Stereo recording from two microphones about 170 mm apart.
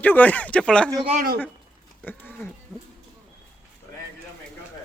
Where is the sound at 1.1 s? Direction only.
50° right (ahead or behind).